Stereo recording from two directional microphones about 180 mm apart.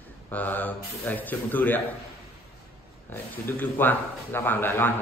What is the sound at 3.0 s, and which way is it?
A man's voice, 10° left (ahead or behind).